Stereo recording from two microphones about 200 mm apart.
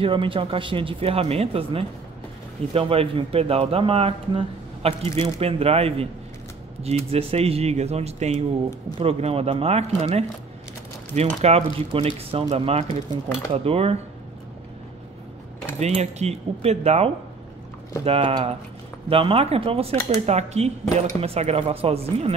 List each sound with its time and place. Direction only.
0.0 s speech: 25° right (ahead or behind)
11.4 s speech: 30° right (ahead or behind)
15.8 s speech: 35° right (ahead or behind)